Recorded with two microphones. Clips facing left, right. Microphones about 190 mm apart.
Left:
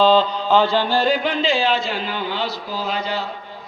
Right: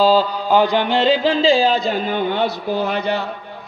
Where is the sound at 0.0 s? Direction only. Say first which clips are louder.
Right 1 dB; 10° right (ahead or behind); by 3.2 s 60° right (ahead or behind).